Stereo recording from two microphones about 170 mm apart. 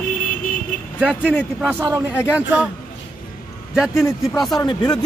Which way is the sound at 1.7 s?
15° right (ahead or behind).